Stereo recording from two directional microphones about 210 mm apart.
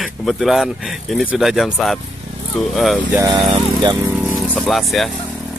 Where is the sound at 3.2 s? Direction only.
20° right (ahead or behind).